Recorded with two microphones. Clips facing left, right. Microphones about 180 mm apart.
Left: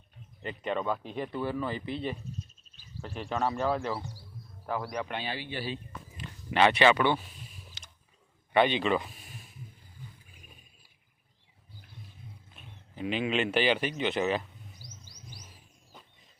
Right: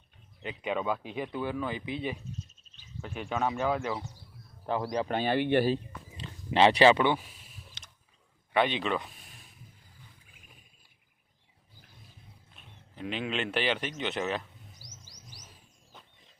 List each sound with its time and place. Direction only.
0.4 s speech: 5° right (ahead or behind)
3.2 s speech: 5° right (ahead or behind)
4.6 s speech: 25° right (ahead or behind)
5.1 s speech: 50° right (ahead or behind)
6.2 s speech: 30° right (ahead or behind)
7.8 s a sound: centre (ahead or behind)
8.5 s speech: centre (ahead or behind)
12.5 s a man's voice: 5° left (ahead or behind)
14.8 s music: 90° right